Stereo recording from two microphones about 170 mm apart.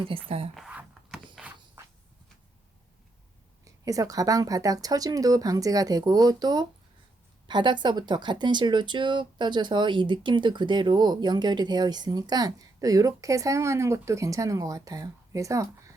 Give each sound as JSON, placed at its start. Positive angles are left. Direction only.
{"t": 0.3, "sound": "speech", "side_deg": -35}
{"t": 0.5, "sound": "a sound", "side_deg": -5}
{"t": 3.6, "sound": "speech", "side_deg": -20}